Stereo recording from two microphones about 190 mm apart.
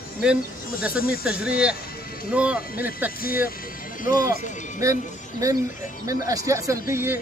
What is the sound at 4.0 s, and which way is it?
Speech, 45° left (ahead or behind).